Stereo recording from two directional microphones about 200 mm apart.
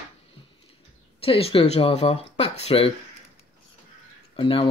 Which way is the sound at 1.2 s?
30° left (ahead or behind).